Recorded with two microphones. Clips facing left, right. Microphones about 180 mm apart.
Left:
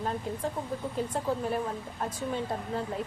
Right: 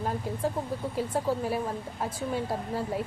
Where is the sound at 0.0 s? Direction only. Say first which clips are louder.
Right 2 dB; 5° right (ahead or behind).